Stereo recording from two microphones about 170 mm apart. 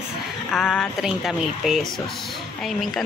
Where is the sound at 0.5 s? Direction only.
5° left (ahead or behind).